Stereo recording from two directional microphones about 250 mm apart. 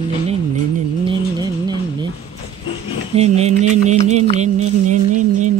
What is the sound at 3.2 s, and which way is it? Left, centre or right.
Music, right.